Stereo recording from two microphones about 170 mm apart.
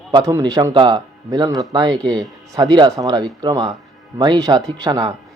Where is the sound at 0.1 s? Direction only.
20° right (ahead or behind).